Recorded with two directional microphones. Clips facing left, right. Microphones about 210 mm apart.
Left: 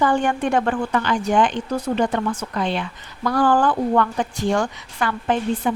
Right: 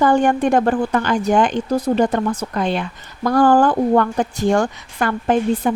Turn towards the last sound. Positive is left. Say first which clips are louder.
# right 4 dB
turn(degrees=-45)  # may be behind; listen again after turning